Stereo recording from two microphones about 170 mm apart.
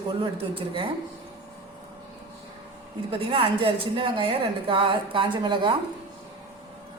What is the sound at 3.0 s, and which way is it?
A woman's voice, 35° right (ahead or behind).